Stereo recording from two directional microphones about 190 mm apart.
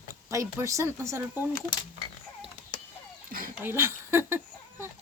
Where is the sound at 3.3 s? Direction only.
45° right (ahead or behind).